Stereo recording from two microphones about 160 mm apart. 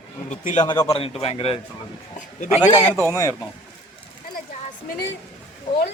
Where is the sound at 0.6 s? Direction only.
25° left (ahead or behind).